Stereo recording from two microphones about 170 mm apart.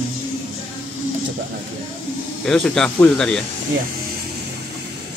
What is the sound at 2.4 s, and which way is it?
Speech, 5° left (ahead or behind).